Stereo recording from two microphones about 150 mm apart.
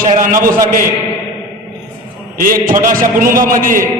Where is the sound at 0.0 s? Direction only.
65° right (ahead or behind).